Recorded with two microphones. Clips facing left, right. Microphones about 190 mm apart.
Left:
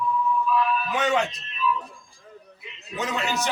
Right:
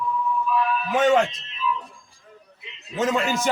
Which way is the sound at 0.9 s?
45° right (ahead or behind).